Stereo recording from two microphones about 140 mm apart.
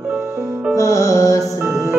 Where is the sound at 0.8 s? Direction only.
20° left (ahead or behind).